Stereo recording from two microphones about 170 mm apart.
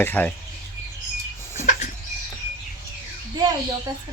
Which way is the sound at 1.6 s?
45° left (ahead or behind).